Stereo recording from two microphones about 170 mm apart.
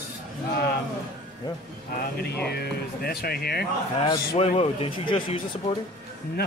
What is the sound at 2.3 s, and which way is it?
Speech, 70° left (ahead or behind).